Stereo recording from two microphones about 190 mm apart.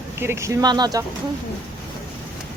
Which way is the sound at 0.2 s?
15° right (ahead or behind).